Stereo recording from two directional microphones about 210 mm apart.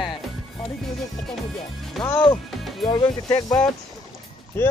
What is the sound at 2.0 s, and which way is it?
Speech, 20° left (ahead or behind).